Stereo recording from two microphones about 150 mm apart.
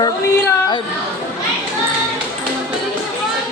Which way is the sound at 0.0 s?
25° left (ahead or behind).